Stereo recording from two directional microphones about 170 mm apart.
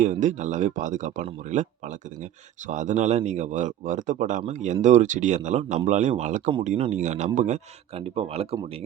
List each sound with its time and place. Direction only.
0.0 s speech: 45° right (ahead or behind)